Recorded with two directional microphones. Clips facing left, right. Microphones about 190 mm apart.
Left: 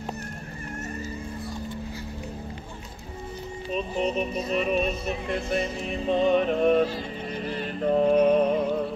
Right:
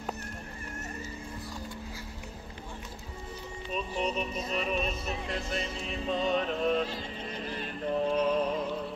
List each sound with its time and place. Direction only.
3.7 s music: 50° left (ahead or behind)